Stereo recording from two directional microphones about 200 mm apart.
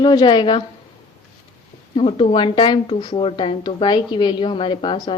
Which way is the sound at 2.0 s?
30° left (ahead or behind).